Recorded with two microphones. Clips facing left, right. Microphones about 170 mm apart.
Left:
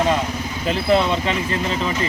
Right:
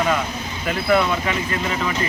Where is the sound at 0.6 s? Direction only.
25° left (ahead or behind).